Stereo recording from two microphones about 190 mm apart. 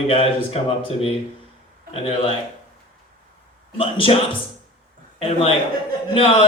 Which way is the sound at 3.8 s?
30° left (ahead or behind).